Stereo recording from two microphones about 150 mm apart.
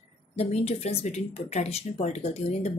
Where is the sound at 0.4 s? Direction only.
45° left (ahead or behind).